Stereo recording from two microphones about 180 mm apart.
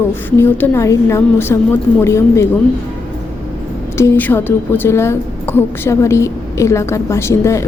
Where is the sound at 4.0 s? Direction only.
10° left (ahead or behind).